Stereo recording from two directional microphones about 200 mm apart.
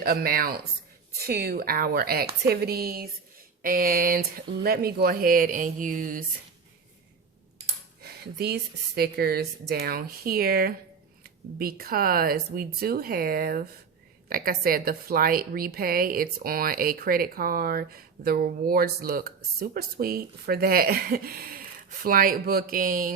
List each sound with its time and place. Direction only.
0.0 s a woman's voice: 50° right (ahead or behind)
8.0 s a woman's voice: 55° right (ahead or behind)